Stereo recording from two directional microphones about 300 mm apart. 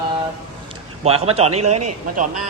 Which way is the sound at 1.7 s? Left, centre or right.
Right.